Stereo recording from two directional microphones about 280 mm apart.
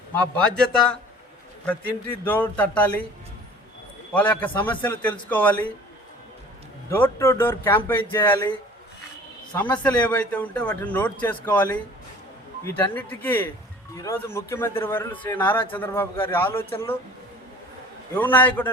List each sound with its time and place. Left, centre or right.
0.1 s a man's voice: centre
2.2 s a man's voice: centre
4.1 s a man's voice: centre
6.9 s a man's voice: centre
18.1 s a man's voice: centre